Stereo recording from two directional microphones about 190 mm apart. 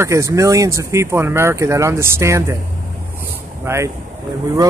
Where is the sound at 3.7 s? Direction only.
10° right (ahead or behind).